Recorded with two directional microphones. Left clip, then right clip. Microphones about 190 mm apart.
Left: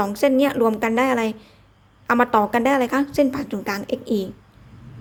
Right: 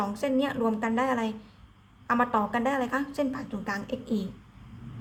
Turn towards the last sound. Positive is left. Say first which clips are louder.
# left 9 dB
turn(degrees=30)  # may be behind; listen again after turning